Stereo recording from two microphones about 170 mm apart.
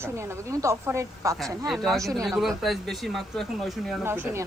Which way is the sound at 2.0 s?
20° right (ahead or behind).